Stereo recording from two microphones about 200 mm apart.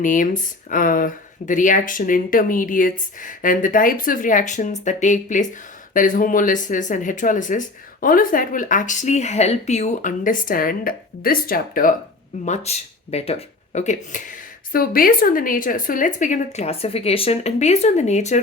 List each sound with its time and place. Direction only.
0.0 s speech: 40° left (ahead or behind)
12.5 s speech: 30° left (ahead or behind)